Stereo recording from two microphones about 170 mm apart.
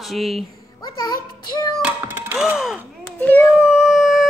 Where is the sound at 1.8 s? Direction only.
10° right (ahead or behind).